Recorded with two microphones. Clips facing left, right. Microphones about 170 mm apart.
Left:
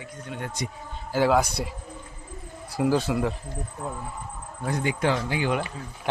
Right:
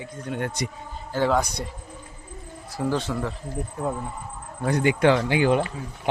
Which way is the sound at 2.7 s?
10° left (ahead or behind).